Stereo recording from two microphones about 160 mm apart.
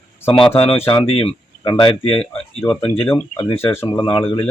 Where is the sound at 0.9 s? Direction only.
35° left (ahead or behind).